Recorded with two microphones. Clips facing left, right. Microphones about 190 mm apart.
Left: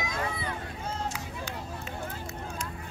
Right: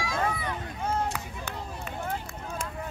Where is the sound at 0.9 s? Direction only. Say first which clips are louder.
Right 6 dB; 55° right (ahead or behind).